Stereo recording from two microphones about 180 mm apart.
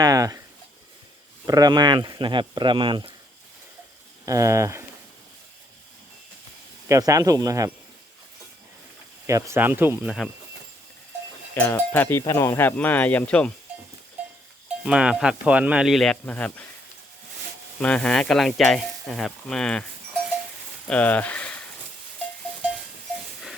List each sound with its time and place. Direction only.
0.0 s speech: 20° right (ahead or behind)
1.5 s speech: 20° right (ahead or behind)
4.3 s speech: 15° right (ahead or behind)
6.8 s speech: 15° right (ahead or behind)
9.2 s speech: 15° right (ahead or behind)
11.5 s speech: 10° left (ahead or behind)
14.8 s speech: 5° right (ahead or behind)
17.7 s speech: 5° left (ahead or behind)
20.8 s a sound: 10° left (ahead or behind)